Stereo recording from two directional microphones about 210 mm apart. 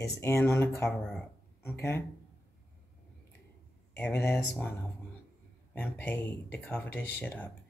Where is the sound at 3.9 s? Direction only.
10° left (ahead or behind).